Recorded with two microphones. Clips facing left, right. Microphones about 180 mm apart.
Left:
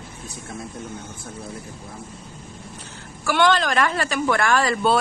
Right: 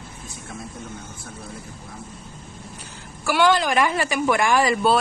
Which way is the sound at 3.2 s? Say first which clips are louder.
Even; 10° right (ahead or behind).